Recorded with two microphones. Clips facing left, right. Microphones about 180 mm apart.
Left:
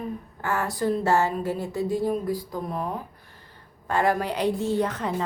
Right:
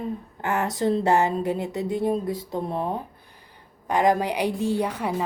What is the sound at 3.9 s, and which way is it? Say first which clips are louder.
A woman's voice: right 3 dB; 15° right (ahead or behind).